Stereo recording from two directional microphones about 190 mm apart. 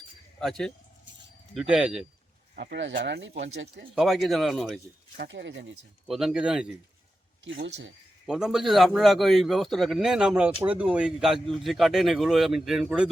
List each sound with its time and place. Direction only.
0.3 s a man's voice: centre (ahead or behind)
2.6 s speech: 65° right (ahead or behind)
3.9 s a man's voice: centre (ahead or behind)
5.1 s speech: 60° right (ahead or behind)
6.1 s a man's voice: centre (ahead or behind)
7.4 s speech: 75° right (ahead or behind)
8.3 s a man's voice: 5° right (ahead or behind)